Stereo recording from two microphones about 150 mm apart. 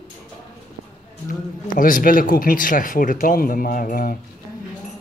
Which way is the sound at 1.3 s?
60° left (ahead or behind).